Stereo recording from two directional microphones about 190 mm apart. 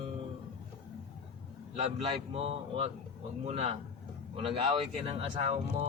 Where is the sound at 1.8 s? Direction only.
30° right (ahead or behind).